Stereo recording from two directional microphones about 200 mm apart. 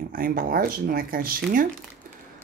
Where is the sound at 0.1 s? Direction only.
45° right (ahead or behind).